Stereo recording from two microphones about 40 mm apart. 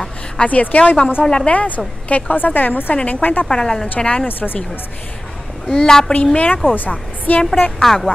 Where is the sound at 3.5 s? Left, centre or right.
Centre.